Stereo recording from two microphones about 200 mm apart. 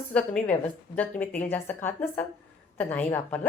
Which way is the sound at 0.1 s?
5° left (ahead or behind).